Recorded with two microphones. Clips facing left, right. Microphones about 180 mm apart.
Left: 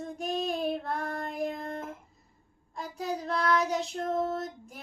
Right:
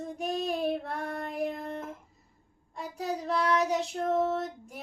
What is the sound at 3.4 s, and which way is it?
Child singing, 30° right (ahead or behind).